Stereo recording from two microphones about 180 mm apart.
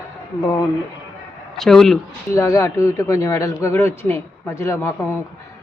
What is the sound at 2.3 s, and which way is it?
Speech, 15° left (ahead or behind).